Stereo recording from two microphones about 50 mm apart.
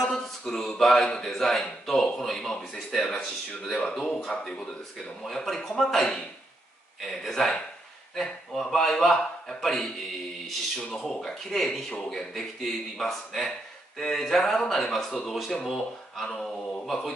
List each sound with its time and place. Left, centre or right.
0.0 s a sound: centre
1.1 s a man's voice: centre
5.2 s a man's voice: centre
11.9 s a man's voice: centre
12.4 s a man's voice: centre
16.8 s speech: centre